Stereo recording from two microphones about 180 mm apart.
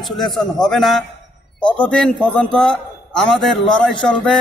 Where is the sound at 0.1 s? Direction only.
Centre (ahead or behind).